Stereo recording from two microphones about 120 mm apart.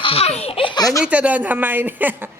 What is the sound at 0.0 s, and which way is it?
Speech, 55° left (ahead or behind).